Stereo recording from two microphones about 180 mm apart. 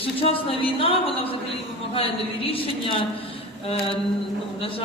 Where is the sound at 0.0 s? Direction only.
30° left (ahead or behind).